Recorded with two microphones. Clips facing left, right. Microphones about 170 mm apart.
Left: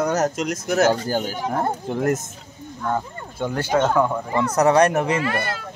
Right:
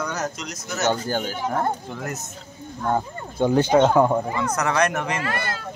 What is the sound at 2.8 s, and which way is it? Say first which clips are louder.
Speech: right 1 dB; 20° right (ahead or behind).